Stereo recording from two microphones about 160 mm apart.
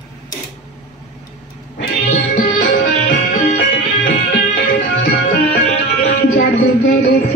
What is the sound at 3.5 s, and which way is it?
Music, 90° left.